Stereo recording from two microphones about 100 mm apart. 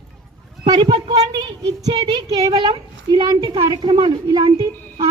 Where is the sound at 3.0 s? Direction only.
40° right (ahead or behind).